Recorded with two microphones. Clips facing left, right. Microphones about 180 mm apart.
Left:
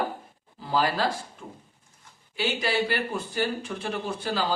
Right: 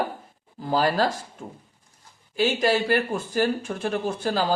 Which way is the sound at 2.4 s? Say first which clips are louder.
Right 5 dB; 45° right (ahead or behind).